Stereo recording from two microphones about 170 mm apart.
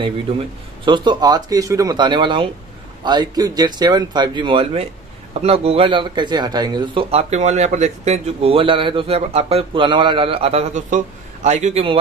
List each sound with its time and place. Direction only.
0.8 s speech: 25° right (ahead or behind)